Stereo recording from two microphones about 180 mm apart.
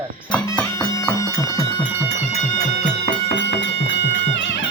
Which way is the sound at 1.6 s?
30° left (ahead or behind).